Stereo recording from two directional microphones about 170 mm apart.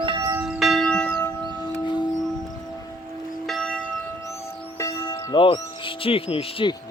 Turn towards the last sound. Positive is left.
turn(degrees=30)  # may be behind; listen again after turning